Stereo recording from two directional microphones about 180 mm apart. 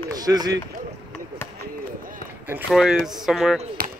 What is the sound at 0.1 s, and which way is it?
Speech, 20° right (ahead or behind).